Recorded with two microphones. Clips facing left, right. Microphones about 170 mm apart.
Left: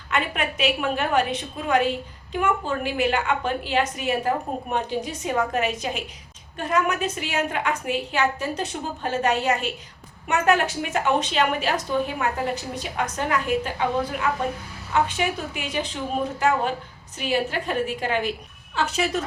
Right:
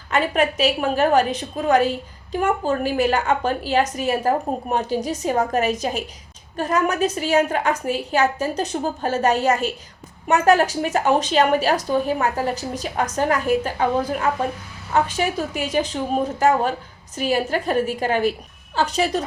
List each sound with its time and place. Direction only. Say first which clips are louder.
0.1 s a woman's voice: right 6 dB; 40° right (ahead or behind)